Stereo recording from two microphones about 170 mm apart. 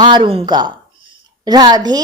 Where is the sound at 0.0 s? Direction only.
30° right (ahead or behind).